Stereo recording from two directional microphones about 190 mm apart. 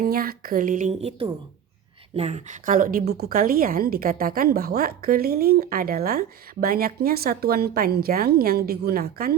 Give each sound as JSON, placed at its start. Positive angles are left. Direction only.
{"t": 0.0, "sound": "a woman's voice", "side_deg": -50}